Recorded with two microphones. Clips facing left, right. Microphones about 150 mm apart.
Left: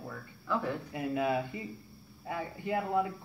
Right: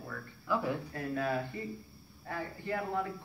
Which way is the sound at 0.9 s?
15° left (ahead or behind).